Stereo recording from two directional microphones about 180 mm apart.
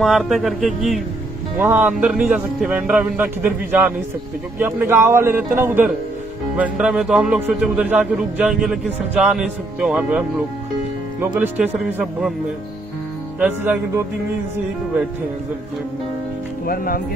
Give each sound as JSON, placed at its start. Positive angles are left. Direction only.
{"t": 0.0, "sound": "a man's voice", "side_deg": 0}
{"t": 13.4, "sound": "a man's voice", "side_deg": -10}
{"t": 16.6, "sound": "speech", "side_deg": 55}